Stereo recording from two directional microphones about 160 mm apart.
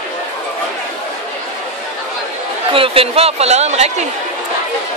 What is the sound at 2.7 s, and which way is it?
A man's voice, 35° right (ahead or behind).